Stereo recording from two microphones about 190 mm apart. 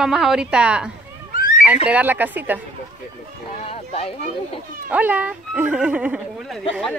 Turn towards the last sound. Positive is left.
turn(degrees=0)  # may be behind; listen again after turning